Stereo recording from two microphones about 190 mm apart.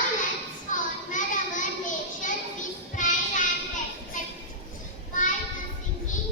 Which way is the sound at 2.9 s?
40° left (ahead or behind).